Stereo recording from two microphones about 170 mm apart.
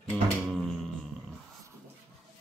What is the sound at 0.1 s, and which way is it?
Music, 10° left (ahead or behind).